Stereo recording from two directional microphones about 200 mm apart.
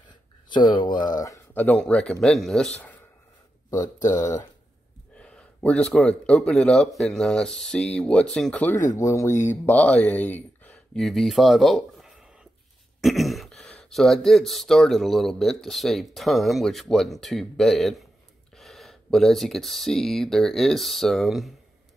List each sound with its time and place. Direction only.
0.5 s speech: 25° left (ahead or behind); by 3.0 s 5° left (ahead or behind)
3.7 s speech: 20° left (ahead or behind)
4.2 s speech: 40° left (ahead or behind)
5.1 s speech: 5° left (ahead or behind)
9.3 s speech: 35° left (ahead or behind)
9.7 s speech: 5° left (ahead or behind)